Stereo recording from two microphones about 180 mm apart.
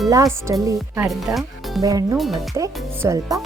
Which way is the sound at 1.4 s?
Centre (ahead or behind).